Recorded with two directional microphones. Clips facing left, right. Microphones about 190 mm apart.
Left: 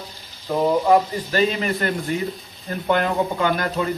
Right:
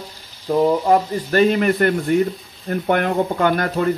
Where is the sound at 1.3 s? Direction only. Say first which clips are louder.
Right 6 dB; 55° right (ahead or behind).